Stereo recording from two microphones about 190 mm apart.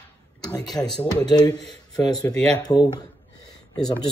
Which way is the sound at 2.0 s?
20° left (ahead or behind).